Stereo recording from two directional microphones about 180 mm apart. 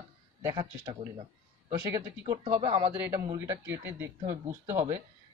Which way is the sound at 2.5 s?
25° right (ahead or behind).